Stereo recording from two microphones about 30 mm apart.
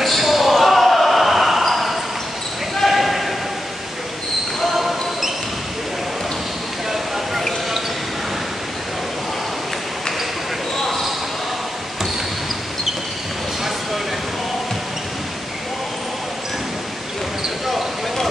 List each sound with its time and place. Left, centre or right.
0.0 s basketball bounce: centre
2.9 s a sound: centre
4.7 s basketball bounce: centre